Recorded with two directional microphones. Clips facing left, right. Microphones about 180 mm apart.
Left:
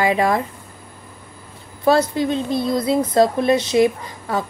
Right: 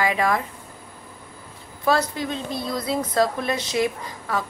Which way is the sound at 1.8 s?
25° left (ahead or behind).